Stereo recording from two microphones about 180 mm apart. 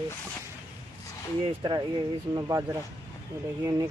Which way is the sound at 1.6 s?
25° right (ahead or behind).